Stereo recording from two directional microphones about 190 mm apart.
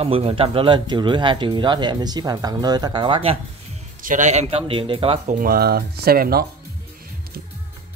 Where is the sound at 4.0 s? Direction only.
45° right (ahead or behind).